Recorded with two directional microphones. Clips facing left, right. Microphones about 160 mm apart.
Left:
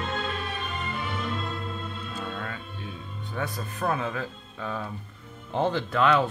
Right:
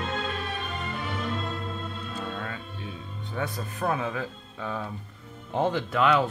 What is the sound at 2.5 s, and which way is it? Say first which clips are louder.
Music: even; 25° right (ahead or behind).